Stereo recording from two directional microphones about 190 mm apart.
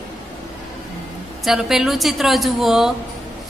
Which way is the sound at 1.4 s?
Centre (ahead or behind).